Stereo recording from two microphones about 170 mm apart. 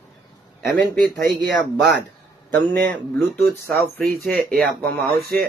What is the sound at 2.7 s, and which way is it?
Speech, 5° left (ahead or behind).